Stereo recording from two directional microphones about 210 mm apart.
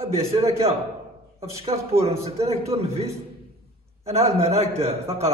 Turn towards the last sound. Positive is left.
turn(degrees=-30)  # may be behind; listen again after turning